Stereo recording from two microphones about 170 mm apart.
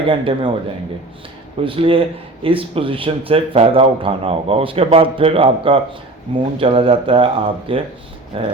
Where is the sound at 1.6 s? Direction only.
30° right (ahead or behind).